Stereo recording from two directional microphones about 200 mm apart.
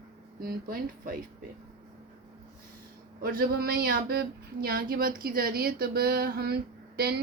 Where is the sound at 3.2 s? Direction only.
50° right (ahead or behind).